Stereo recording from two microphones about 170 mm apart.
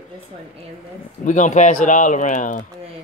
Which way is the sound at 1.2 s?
45° left (ahead or behind).